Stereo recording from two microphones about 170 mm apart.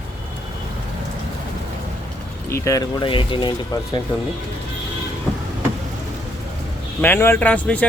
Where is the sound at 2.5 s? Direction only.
15° left (ahead or behind).